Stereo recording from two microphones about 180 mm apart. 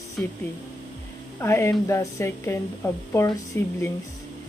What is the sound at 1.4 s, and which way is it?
Speech, 15° left (ahead or behind).